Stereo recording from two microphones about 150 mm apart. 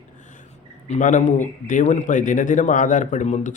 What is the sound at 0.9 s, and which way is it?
A man's voice, 55° left (ahead or behind).